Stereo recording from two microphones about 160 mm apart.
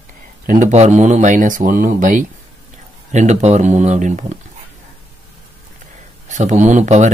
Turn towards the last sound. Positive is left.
turn(degrees=-50)  # may be behind; listen again after turning